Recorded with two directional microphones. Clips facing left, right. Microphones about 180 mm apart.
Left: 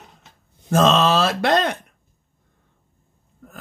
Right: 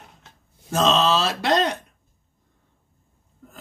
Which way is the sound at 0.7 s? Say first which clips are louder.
Left 3 dB; 55° left (ahead or behind).